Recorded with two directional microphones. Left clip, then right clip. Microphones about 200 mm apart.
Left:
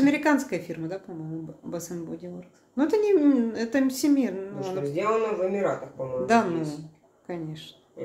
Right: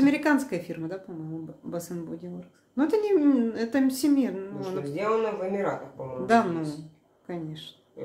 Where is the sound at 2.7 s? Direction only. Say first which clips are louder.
Left 2 dB; 5° right (ahead or behind).